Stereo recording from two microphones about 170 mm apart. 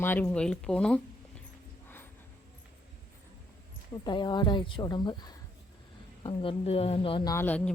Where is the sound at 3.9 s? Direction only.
25° left (ahead or behind).